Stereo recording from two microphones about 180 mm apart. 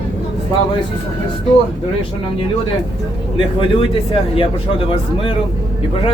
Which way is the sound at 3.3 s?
30° left (ahead or behind).